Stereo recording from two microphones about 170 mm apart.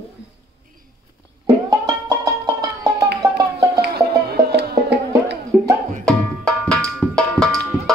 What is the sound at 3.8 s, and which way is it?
Music, 70° right (ahead or behind).